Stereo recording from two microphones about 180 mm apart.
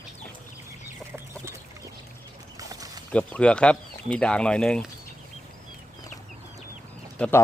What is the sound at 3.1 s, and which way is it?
Speech, 5° left (ahead or behind).